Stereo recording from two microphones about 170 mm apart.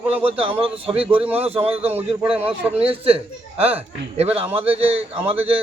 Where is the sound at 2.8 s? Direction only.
35° right (ahead or behind).